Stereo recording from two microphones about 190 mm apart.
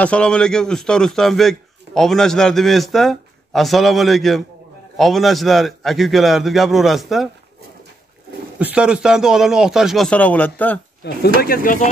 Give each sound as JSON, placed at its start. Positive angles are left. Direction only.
{"t": 0.0, "sound": "a man's voice", "side_deg": 5}
{"t": 8.5, "sound": "a man's voice", "side_deg": -5}
{"t": 11.0, "sound": "speech", "side_deg": 60}
{"t": 11.4, "sound": "speech", "side_deg": 50}